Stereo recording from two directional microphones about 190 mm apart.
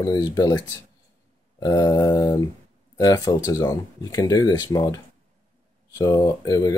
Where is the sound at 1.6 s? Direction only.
20° left (ahead or behind).